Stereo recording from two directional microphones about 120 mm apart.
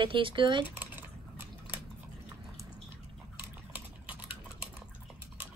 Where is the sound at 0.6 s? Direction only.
15° right (ahead or behind).